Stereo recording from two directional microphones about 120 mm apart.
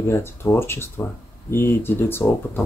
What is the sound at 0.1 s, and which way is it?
Speech, 20° left (ahead or behind).